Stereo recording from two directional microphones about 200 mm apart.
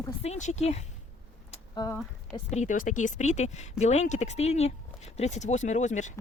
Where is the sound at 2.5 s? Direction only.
40° left (ahead or behind).